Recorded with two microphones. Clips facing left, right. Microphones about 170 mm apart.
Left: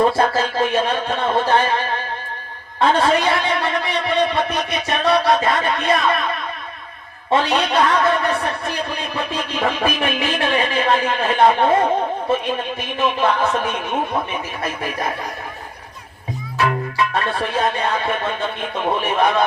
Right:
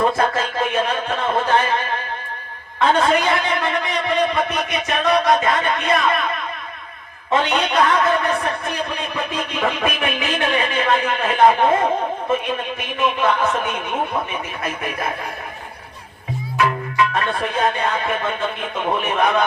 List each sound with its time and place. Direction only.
0.1 s a man's voice: 30° left (ahead or behind)
7.3 s a man's voice: 30° left (ahead or behind)
17.3 s a man's voice: 30° left (ahead or behind)